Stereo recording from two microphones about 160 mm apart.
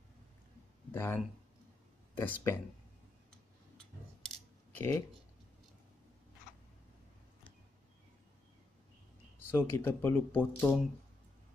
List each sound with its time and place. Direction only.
0.9 s speech: 15° left (ahead or behind)
3.3 s scissors: 5° left (ahead or behind)
4.7 s speech: 20° left (ahead or behind)
9.5 s speech: 15° left (ahead or behind)